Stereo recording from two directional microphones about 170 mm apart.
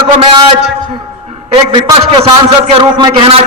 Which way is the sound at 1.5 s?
30° right (ahead or behind).